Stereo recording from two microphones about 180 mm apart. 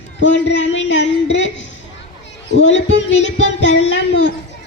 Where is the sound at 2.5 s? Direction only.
90° left.